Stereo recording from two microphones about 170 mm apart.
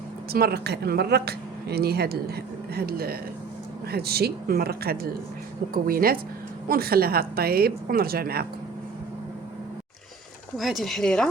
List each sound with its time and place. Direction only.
0.3 s a woman's voice: 65° right (ahead or behind)
10.6 s speech: centre (ahead or behind)